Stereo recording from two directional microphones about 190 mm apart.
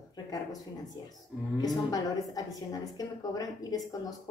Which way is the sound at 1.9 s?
20° left (ahead or behind).